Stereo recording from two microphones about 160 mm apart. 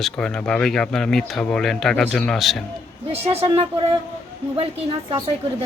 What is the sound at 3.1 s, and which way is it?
A woman's voice, 40° right (ahead or behind).